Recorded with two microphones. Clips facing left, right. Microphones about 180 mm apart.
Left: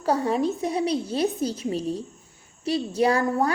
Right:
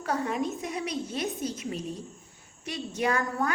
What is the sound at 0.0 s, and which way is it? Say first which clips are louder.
A woman's voice: left 6 dB; 35° left (ahead or behind).